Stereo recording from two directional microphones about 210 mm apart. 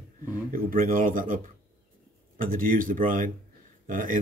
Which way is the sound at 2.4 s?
40° right (ahead or behind).